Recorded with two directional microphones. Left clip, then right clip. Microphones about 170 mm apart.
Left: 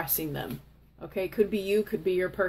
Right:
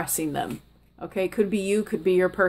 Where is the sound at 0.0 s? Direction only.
30° right (ahead or behind).